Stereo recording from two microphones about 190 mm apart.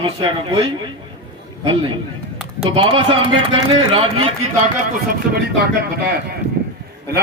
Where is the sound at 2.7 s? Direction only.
25° right (ahead or behind).